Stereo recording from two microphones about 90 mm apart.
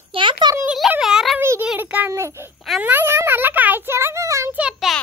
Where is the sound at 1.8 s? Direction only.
20° right (ahead or behind).